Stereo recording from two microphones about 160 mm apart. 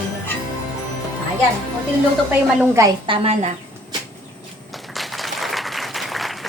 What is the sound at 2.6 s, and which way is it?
Speech, 20° right (ahead or behind).